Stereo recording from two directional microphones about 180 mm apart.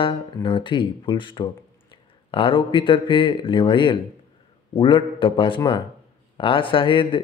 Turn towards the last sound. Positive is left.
turn(degrees=30)  # may be behind; listen again after turning